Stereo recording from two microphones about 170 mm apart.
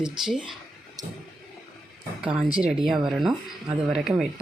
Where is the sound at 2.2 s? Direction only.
10° right (ahead or behind).